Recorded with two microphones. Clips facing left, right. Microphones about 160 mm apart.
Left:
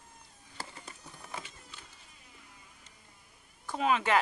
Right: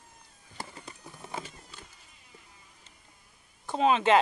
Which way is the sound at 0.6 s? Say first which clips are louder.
Right 3 dB; 25° right (ahead or behind).